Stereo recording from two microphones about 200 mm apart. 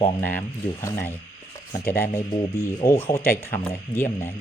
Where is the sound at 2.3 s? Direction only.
20° left (ahead or behind).